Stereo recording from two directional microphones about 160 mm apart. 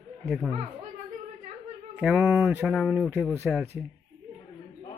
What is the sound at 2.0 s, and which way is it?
Speech, 10° right (ahead or behind).